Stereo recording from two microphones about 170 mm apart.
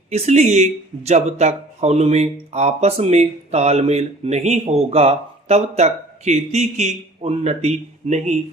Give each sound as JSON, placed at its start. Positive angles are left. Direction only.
{"t": 0.1, "sound": "speech", "side_deg": -40}